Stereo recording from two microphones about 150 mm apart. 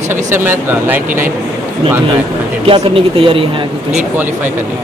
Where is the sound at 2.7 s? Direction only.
35° right (ahead or behind).